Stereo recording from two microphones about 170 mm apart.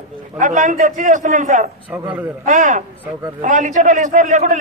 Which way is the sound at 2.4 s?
45° right (ahead or behind).